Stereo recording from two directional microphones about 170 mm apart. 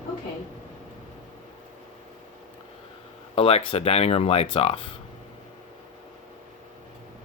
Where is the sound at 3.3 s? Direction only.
35° left (ahead or behind).